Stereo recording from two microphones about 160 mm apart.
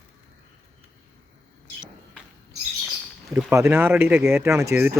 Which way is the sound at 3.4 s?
15° right (ahead or behind).